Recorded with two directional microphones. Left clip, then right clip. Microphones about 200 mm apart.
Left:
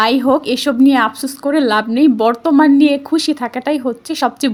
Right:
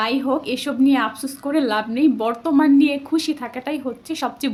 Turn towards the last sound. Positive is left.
turn(degrees=40)  # may be behind; listen again after turning